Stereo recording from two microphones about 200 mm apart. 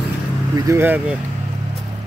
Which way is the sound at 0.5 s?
15° right (ahead or behind).